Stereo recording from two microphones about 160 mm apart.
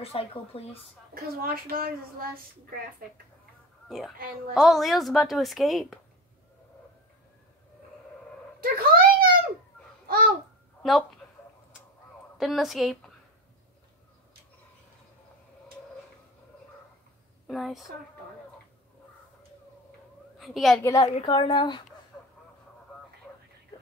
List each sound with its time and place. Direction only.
0.0 s a woman's voice: 35° left (ahead or behind)
1.1 s a woman's voice: 70° right (ahead or behind)
4.6 s a woman's voice: centre (ahead or behind)
8.5 s a sound: 65° right (ahead or behind)
10.0 s babbling: 65° right (ahead or behind)
10.8 s speech: centre (ahead or behind)
12.4 s a woman's voice: centre (ahead or behind)
17.5 s a woman's voice: centre (ahead or behind)
20.3 s a woman's voice: centre (ahead or behind)
21.0 s a woman's voice: 30° left (ahead or behind)